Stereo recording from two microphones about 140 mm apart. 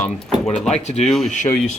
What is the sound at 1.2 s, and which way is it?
Speech, 65° left (ahead or behind).